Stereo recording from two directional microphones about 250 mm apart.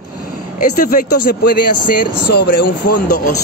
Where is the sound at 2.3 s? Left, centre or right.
Left.